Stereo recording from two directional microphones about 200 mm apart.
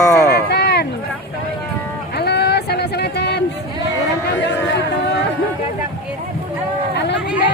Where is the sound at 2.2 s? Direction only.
55° left (ahead or behind).